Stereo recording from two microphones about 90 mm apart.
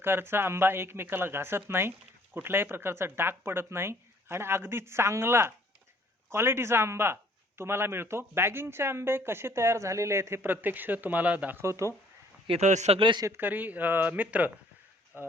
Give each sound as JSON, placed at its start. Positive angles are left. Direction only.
{"t": 0.0, "sound": "speech", "side_deg": -25}
{"t": 11.6, "sound": "speech", "side_deg": -30}
{"t": 12.5, "sound": "speech", "side_deg": -80}
{"t": 13.2, "sound": "speech", "side_deg": -25}